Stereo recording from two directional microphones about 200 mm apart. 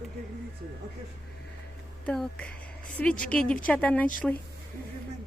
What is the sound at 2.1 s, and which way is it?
Speech, 5° left (ahead or behind).